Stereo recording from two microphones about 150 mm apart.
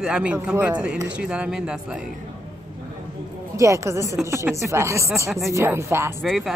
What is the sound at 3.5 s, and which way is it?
Speech, 20° right (ahead or behind).